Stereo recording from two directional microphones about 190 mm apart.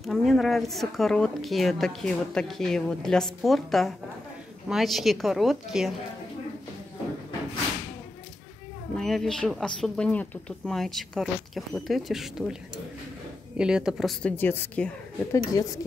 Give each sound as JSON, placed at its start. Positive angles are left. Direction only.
{"t": 0.0, "sound": "a woman's voice", "side_deg": 0}
{"t": 8.9, "sound": "a woman's voice", "side_deg": 0}
{"t": 13.6, "sound": "a woman's voice", "side_deg": -5}